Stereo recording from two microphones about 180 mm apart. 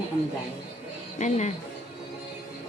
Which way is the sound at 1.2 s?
40° left (ahead or behind).